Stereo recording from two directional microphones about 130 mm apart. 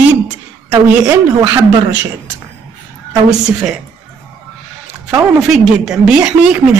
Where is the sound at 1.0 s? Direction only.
20° right (ahead or behind).